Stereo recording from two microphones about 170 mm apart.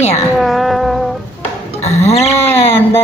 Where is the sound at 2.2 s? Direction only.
15° left (ahead or behind).